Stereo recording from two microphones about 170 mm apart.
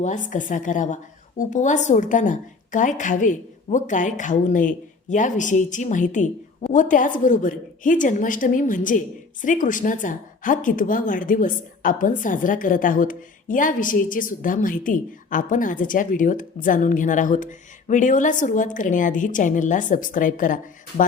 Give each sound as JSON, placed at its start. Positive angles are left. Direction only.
{"t": 0.0, "sound": "a woman's voice", "side_deg": 45}